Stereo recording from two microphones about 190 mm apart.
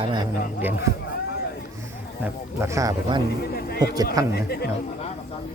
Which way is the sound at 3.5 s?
55° left (ahead or behind).